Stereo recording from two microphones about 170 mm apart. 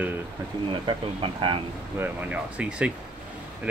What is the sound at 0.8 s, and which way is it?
Speech, 30° right (ahead or behind).